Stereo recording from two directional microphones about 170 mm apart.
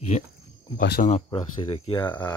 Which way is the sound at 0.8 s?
65° left (ahead or behind).